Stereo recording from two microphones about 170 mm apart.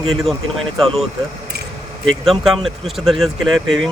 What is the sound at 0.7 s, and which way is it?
Speech, centre (ahead or behind).